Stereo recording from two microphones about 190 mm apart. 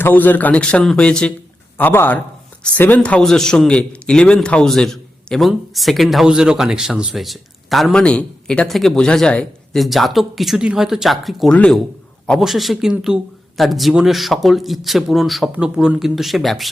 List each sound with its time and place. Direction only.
0.0 s a man's voice: 10° left (ahead or behind)